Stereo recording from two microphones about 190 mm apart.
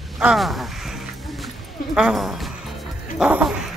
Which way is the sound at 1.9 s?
Centre (ahead or behind).